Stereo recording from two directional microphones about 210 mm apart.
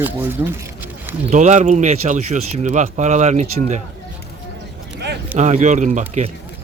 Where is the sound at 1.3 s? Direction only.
35° right (ahead or behind).